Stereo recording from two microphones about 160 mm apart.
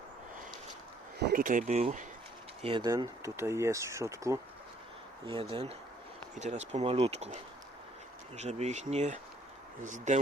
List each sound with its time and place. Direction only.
1.2 s speech: 60° right (ahead or behind); by 2.0 s 45° right (ahead or behind)
2.6 s speech: 35° right (ahead or behind)
5.2 s speech: 35° right (ahead or behind)
6.3 s speech: 45° right (ahead or behind)
8.4 s speech: 45° right (ahead or behind)